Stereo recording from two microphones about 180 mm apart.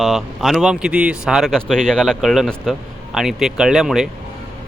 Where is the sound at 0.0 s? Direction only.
Centre (ahead or behind).